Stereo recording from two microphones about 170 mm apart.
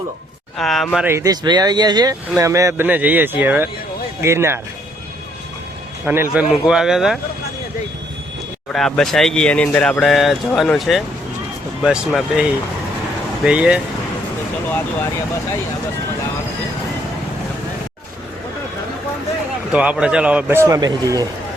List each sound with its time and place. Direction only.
0.5 s speech: centre (ahead or behind)
1.0 s speech: 15° right (ahead or behind)
6.3 s speech: 5° right (ahead or behind)
8.7 s speech: 5° left (ahead or behind)
19.7 s speech: 5° right (ahead or behind)